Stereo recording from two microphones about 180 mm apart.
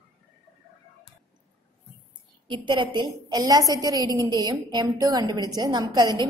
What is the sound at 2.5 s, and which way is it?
A woman's voice, 25° right (ahead or behind).